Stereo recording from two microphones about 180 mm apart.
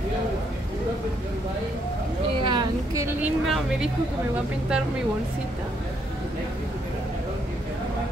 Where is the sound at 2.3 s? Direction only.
25° right (ahead or behind).